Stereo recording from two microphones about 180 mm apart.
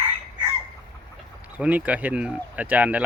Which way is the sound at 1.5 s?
5° right (ahead or behind).